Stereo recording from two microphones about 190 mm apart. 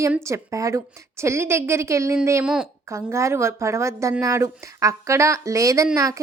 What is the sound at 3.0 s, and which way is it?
Speech, 15° right (ahead or behind).